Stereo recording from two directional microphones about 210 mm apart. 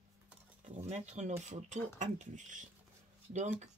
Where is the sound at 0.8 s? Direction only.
30° right (ahead or behind).